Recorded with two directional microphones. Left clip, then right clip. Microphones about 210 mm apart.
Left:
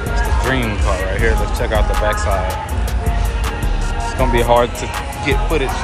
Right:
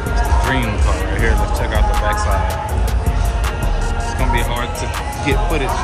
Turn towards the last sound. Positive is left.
turn(degrees=-15)  # may be behind; listen again after turning